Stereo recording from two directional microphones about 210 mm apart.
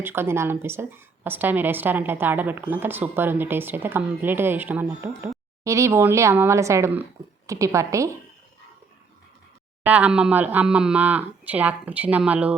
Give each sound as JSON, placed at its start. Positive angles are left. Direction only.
{"t": 0.0, "sound": "a woman's voice", "side_deg": -10}
{"t": 9.8, "sound": "a woman's voice", "side_deg": -5}